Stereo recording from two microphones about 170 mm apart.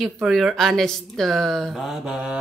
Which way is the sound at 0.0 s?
Centre (ahead or behind).